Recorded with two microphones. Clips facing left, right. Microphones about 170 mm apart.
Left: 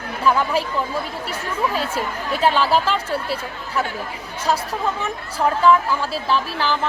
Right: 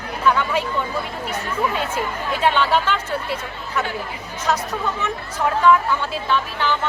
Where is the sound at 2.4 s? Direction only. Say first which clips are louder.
Left 1 dB; 35° left (ahead or behind).